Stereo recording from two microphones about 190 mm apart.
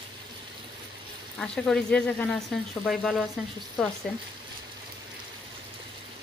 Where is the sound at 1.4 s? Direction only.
5° left (ahead or behind).